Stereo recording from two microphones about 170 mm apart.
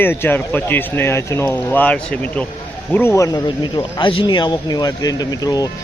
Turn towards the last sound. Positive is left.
turn(degrees=20)  # may be behind; listen again after turning